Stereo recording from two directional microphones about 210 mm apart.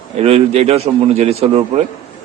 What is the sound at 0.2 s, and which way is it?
A man's voice, 30° right (ahead or behind).